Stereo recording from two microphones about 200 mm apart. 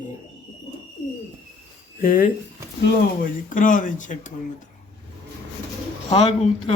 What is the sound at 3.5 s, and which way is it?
Speech, 40° left (ahead or behind).